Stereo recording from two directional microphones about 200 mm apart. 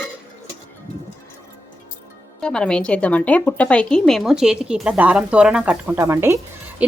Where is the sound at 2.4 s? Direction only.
5° left (ahead or behind).